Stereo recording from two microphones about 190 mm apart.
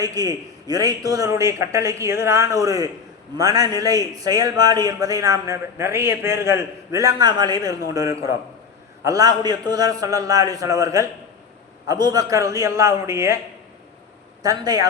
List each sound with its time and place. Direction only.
0.0 s a man's voice: 20° right (ahead or behind)
9.0 s a man's voice: 20° right (ahead or behind)
14.4 s a man's voice: 20° right (ahead or behind)